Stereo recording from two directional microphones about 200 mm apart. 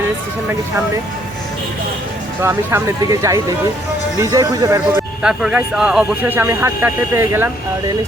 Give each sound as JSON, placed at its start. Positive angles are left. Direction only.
{"t": 2.4, "sound": "speech", "side_deg": -10}
{"t": 5.2, "sound": "speech", "side_deg": -5}